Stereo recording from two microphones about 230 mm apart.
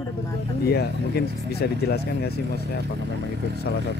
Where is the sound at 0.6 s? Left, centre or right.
Left.